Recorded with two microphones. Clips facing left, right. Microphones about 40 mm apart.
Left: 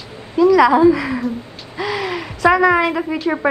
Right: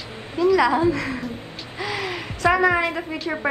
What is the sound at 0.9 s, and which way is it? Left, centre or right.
Speech, centre.